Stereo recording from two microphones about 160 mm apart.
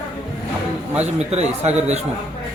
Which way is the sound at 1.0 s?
45° right (ahead or behind).